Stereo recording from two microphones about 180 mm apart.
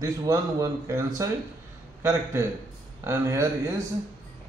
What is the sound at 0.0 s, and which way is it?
Speech, 20° right (ahead or behind).